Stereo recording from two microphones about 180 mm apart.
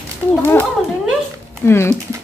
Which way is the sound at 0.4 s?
10° left (ahead or behind).